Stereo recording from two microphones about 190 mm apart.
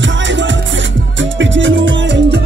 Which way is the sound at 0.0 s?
75° right (ahead or behind).